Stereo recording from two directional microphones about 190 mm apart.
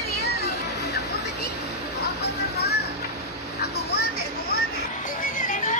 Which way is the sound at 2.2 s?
60° left (ahead or behind).